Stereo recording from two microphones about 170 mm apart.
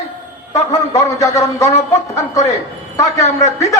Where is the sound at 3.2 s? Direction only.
40° left (ahead or behind).